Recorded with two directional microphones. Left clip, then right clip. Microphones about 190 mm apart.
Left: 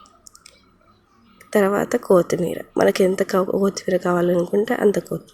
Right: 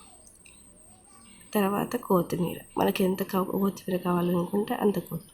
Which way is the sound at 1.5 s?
15° left (ahead or behind).